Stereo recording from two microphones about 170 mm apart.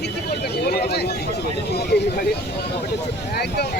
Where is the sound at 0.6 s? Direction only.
70° left (ahead or behind).